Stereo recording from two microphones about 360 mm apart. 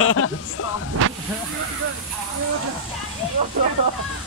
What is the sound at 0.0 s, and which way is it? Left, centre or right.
Music, left.